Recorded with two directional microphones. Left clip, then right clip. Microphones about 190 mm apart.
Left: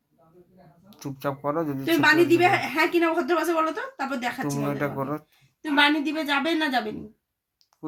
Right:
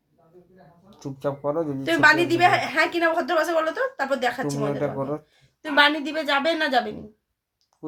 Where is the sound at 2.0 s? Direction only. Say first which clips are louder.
Right 2 dB; 25° right (ahead or behind).